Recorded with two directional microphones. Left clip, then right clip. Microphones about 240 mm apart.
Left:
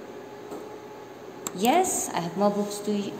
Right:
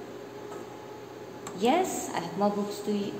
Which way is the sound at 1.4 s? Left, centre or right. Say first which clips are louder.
Left 3 dB; left.